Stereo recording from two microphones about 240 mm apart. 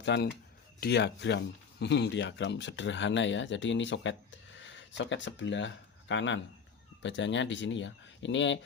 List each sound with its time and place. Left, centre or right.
0.0 s speech: left